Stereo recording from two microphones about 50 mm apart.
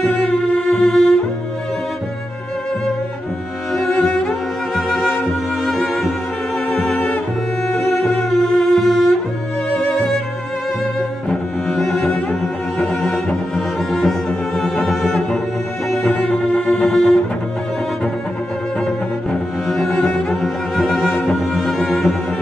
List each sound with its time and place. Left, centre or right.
0.1 s music: left
0.8 s cello: centre
4.3 s music: centre
7.9 s music: centre
11.0 s cello: centre
12.7 s music: centre
14.6 s cello: centre
16.1 s music: left
16.8 s music: centre
19.7 s cello: centre
20.2 s music: centre